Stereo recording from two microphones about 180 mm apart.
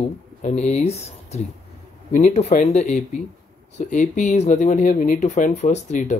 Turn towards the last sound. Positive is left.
turn(degrees=40)  # may be behind; listen again after turning